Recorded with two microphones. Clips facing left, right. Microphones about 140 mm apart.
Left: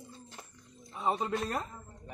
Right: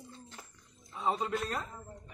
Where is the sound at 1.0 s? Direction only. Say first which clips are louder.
Left 1 dB; 15° left (ahead or behind).